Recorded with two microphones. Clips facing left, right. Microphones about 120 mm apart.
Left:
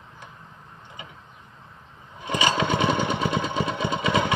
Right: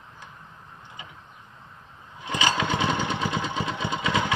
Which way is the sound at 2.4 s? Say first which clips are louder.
Left 2 dB; 20° left (ahead or behind).